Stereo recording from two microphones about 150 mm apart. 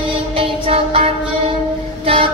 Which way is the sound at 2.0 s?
40° right (ahead or behind).